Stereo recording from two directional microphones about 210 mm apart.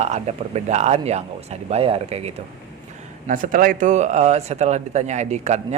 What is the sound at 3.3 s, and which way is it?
Speech, 40° right (ahead or behind).